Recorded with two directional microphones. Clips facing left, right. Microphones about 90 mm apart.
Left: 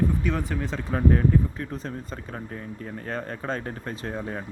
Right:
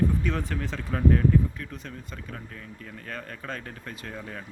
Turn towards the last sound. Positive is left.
turn(degrees=30)  # may be behind; listen again after turning